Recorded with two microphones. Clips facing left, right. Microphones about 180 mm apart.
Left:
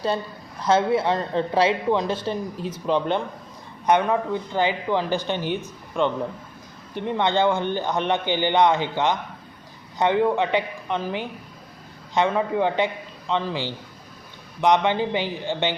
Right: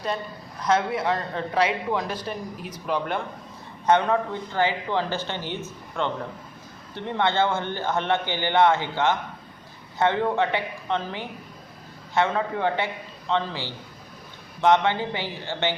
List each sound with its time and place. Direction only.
0.6 s speech: 30° left (ahead or behind)
3.8 s a man's voice: 15° left (ahead or behind)